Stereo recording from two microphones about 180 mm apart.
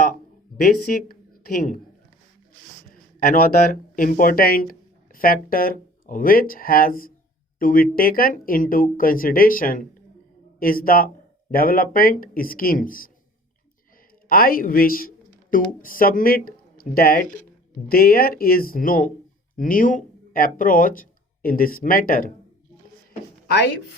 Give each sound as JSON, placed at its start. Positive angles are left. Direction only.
{"t": 0.1, "sound": "a sound", "side_deg": 50}
{"t": 3.2, "sound": "speech", "side_deg": 55}
{"t": 14.3, "sound": "speech", "side_deg": 55}
{"t": 23.5, "sound": "speech", "side_deg": 70}